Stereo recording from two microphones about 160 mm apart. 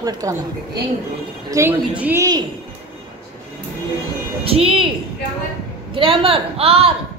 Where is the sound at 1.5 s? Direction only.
10° right (ahead or behind).